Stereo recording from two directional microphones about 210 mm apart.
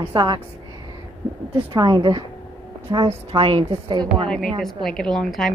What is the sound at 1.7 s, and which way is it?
A woman's voice, 20° right (ahead or behind).